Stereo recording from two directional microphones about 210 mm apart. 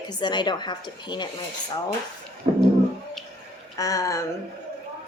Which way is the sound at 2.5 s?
25° right (ahead or behind).